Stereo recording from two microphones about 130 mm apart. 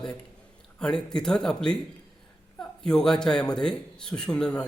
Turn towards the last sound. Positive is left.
turn(degrees=5)  # may be behind; listen again after turning